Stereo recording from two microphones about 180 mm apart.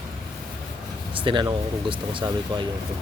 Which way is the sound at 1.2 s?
25° right (ahead or behind).